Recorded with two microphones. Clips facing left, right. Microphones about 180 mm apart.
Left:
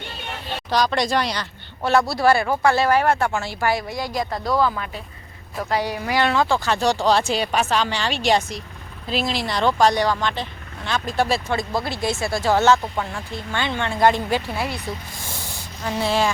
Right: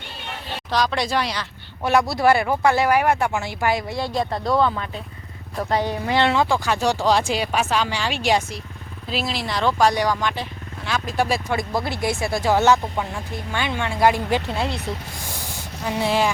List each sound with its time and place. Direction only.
0.7 s speech: centre (ahead or behind)
1.8 s speech: 15° right (ahead or behind)
4.4 s speech: centre (ahead or behind)
6.1 s speech: 25° right (ahead or behind)
15.8 s speech: 15° right (ahead or behind)